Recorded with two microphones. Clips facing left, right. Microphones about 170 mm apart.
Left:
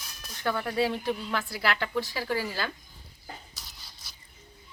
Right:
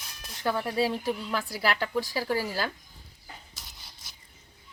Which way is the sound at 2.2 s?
40° right (ahead or behind).